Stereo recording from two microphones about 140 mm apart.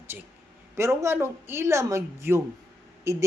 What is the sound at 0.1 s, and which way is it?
Speech, 10° right (ahead or behind).